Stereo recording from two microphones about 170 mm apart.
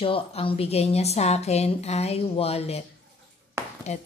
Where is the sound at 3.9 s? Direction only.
40° left (ahead or behind).